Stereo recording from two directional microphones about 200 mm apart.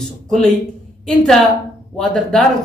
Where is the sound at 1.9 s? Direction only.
Centre (ahead or behind).